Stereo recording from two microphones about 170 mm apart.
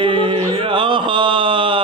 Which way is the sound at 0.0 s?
30° right (ahead or behind).